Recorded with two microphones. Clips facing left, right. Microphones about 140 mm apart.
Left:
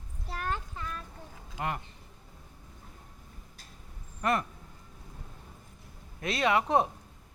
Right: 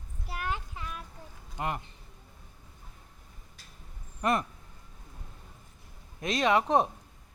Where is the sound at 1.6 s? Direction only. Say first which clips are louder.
Right 1 dB; 20° right (ahead or behind).